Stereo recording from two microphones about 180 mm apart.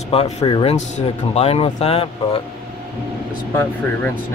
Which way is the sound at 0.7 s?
40° left (ahead or behind).